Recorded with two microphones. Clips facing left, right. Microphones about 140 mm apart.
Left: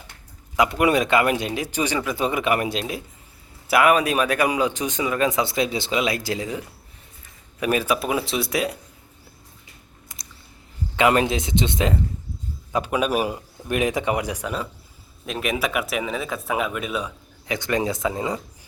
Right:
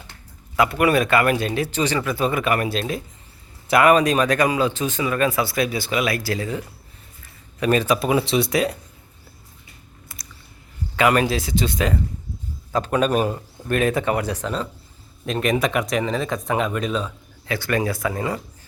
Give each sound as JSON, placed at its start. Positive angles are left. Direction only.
{"t": 0.5, "sound": "speech", "side_deg": 15}
{"t": 7.6, "sound": "speech", "side_deg": 10}
{"t": 10.1, "sound": "a sound", "side_deg": 15}
{"t": 10.9, "sound": "speech", "side_deg": 25}
{"t": 12.7, "sound": "speech", "side_deg": 10}